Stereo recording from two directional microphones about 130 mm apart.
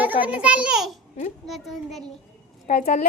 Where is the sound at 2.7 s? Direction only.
65° left (ahead or behind).